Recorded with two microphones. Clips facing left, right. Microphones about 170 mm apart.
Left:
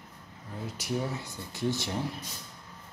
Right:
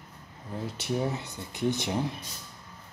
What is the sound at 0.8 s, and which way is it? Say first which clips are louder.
Speech: right 2 dB; 20° right (ahead or behind).